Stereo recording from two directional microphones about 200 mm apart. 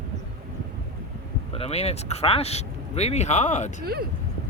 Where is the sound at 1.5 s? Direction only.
30° left (ahead or behind).